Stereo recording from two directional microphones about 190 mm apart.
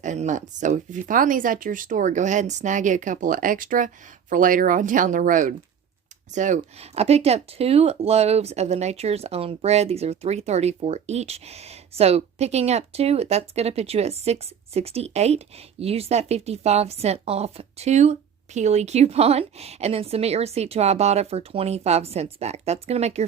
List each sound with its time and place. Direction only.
0.0 s speech: 40° right (ahead or behind)